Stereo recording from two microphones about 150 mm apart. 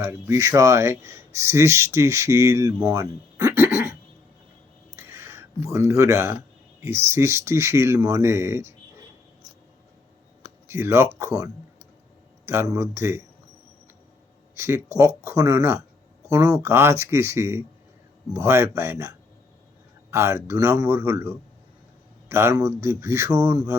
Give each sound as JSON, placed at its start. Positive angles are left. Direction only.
{"t": 0.0, "sound": "speech", "side_deg": -15}
{"t": 4.9, "sound": "a sound", "side_deg": -15}
{"t": 6.8, "sound": "speech", "side_deg": -15}
{"t": 10.7, "sound": "speech", "side_deg": -15}
{"t": 14.5, "sound": "speech", "side_deg": -15}